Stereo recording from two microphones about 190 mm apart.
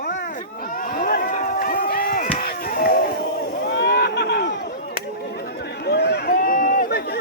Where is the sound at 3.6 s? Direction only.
60° left (ahead or behind).